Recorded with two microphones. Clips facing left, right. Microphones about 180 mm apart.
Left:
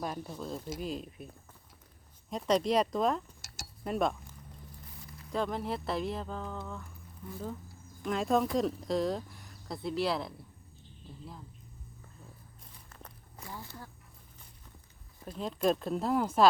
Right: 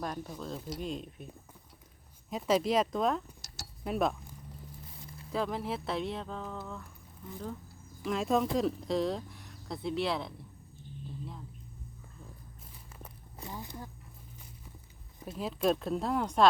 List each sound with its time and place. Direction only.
0.0 s speech: 5° left (ahead or behind)
2.3 s speech: 5° right (ahead or behind)
5.3 s speech: centre (ahead or behind)
8.0 s speech: centre (ahead or behind)
12.9 s walk: 10° right (ahead or behind)
13.4 s a sound: 15° right (ahead or behind)
15.4 s speech: centre (ahead or behind)